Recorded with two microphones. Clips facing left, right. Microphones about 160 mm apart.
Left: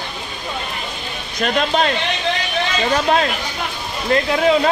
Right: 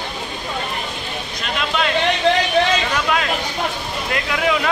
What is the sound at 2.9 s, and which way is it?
Speech, 35° left (ahead or behind).